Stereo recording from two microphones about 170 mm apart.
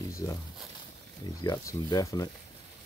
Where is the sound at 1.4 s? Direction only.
20° left (ahead or behind).